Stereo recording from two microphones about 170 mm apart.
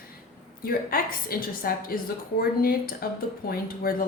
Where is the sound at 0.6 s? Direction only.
60° left (ahead or behind).